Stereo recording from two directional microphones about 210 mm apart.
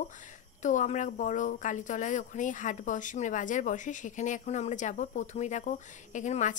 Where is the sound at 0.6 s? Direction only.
35° left (ahead or behind).